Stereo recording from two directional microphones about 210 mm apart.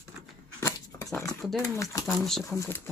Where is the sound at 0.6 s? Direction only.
15° left (ahead or behind).